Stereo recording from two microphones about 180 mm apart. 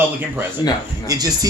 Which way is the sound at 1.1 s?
20° right (ahead or behind).